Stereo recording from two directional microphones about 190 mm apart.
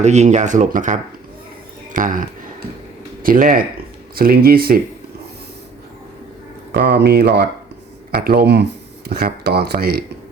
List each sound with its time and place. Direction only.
0.0 s speech: 35° right (ahead or behind)
3.2 s speech: 50° right (ahead or behind)
6.9 s speech: 60° right (ahead or behind)